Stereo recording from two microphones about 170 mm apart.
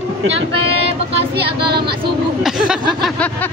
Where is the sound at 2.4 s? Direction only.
5° right (ahead or behind).